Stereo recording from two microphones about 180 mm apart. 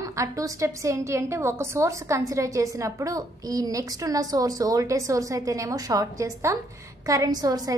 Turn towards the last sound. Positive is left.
turn(degrees=-20)  # may be behind; listen again after turning